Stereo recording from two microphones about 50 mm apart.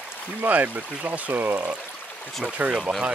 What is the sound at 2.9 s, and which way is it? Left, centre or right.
Speech, centre.